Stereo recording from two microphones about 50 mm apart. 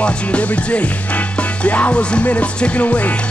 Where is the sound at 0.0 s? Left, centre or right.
Left.